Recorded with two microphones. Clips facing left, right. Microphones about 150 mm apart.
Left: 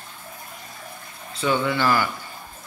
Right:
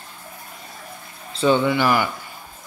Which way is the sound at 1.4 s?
20° right (ahead or behind).